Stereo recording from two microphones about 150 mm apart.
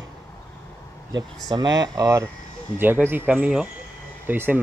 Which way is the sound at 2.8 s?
15° right (ahead or behind).